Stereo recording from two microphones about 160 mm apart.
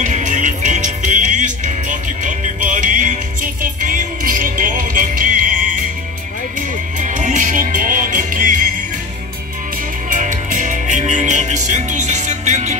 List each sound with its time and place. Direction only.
0.0 s music: 50° right (ahead or behind)
7.0 s music: 50° right (ahead or behind)
10.0 s music: 55° right (ahead or behind)